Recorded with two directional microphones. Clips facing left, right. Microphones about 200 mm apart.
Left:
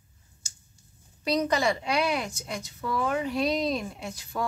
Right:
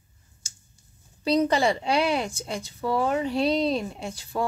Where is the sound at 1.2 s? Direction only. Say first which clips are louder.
Right 4 dB; 30° right (ahead or behind).